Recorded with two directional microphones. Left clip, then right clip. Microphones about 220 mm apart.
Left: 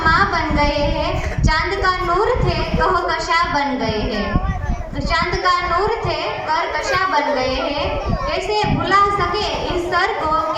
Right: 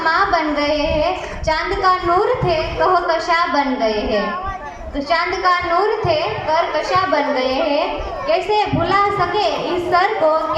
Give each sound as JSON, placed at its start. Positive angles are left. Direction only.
{"t": 1.5, "sound": "a woman's voice", "side_deg": 40}
{"t": 5.1, "sound": "a woman's voice", "side_deg": 40}